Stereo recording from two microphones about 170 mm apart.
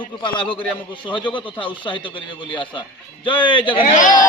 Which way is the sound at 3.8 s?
50° left (ahead or behind).